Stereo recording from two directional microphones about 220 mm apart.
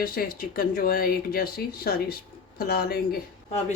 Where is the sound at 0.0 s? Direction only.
40° left (ahead or behind).